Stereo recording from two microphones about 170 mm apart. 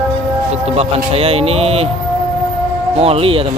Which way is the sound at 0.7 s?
35° right (ahead or behind).